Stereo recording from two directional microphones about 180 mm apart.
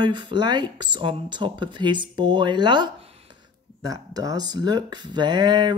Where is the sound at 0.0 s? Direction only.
25° right (ahead or behind).